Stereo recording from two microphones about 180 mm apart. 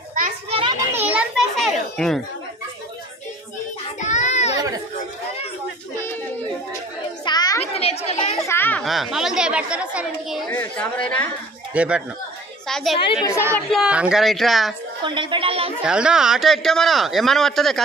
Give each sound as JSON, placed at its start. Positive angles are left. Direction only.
{"t": 0.5, "sound": "children playing", "side_deg": -30}
{"t": 0.7, "sound": "children playing", "side_deg": -10}
{"t": 4.0, "sound": "a sound", "side_deg": 40}
{"t": 7.2, "sound": "children playing", "side_deg": 20}
{"t": 7.7, "sound": "chatter", "side_deg": 35}
{"t": 8.5, "sound": "children playing", "side_deg": 10}
{"t": 8.8, "sound": "speech", "side_deg": 0}
{"t": 10.5, "sound": "a woman's voice", "side_deg": 10}
{"t": 11.7, "sound": "speech", "side_deg": -5}
{"t": 12.6, "sound": "a sound", "side_deg": 0}
{"t": 13.0, "sound": "a woman's voice", "side_deg": 30}
{"t": 13.5, "sound": "speech", "side_deg": 0}
{"t": 15.0, "sound": "a woman's voice", "side_deg": -25}
{"t": 15.8, "sound": "speech", "side_deg": -5}